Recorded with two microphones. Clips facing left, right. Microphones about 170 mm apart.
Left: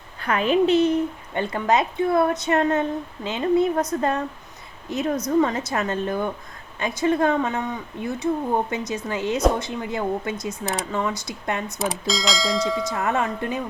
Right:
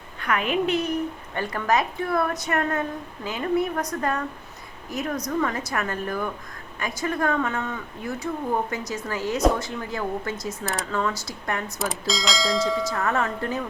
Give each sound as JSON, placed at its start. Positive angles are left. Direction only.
{"t": 0.2, "sound": "a woman's voice", "side_deg": 30}
{"t": 4.9, "sound": "a woman's voice", "side_deg": 25}
{"t": 11.8, "sound": "speech", "side_deg": 0}
{"t": 12.9, "sound": "speech", "side_deg": 20}